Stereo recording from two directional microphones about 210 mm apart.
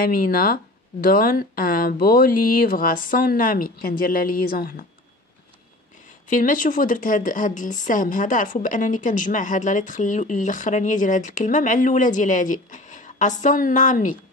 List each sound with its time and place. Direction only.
0.0 s speech: 45° left (ahead or behind)
6.3 s a woman's voice: 40° left (ahead or behind)